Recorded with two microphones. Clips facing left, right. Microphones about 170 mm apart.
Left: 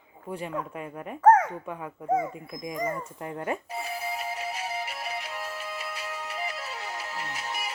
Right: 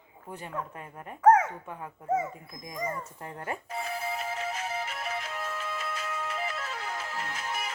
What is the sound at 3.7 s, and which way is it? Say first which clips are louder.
Music: even; 10° left (ahead or behind).